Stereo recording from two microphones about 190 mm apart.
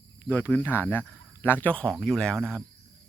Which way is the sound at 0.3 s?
10° left (ahead or behind).